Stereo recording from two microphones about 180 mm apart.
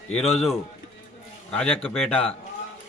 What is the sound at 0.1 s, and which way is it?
Speech, 35° left (ahead or behind).